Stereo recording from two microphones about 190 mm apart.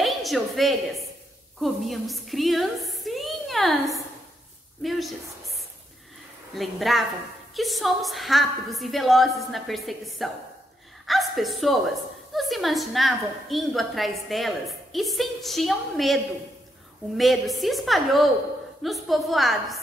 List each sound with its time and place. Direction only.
0.0 s a woman's voice: centre (ahead or behind)
4.8 s a woman's voice: centre (ahead or behind)
6.5 s a woman's voice: centre (ahead or behind)
17.2 s a woman's voice: centre (ahead or behind)